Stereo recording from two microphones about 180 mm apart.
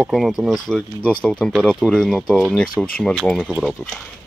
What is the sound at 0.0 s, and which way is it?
Speech, centre (ahead or behind).